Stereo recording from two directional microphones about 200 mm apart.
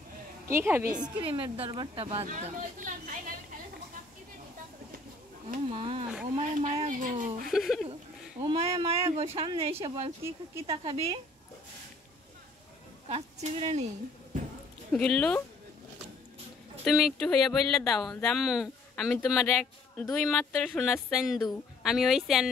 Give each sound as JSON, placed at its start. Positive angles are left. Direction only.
{"t": 0.5, "sound": "a woman's voice", "side_deg": -10}
{"t": 1.0, "sound": "speech", "side_deg": -25}
{"t": 2.2, "sound": "speech", "side_deg": -40}
{"t": 5.5, "sound": "speech", "side_deg": -30}
{"t": 7.4, "sound": "speech", "side_deg": 0}
{"t": 8.4, "sound": "speech", "side_deg": -30}
{"t": 13.1, "sound": "speech", "side_deg": -30}
{"t": 14.9, "sound": "speech", "side_deg": 5}
{"t": 16.8, "sound": "speech", "side_deg": 0}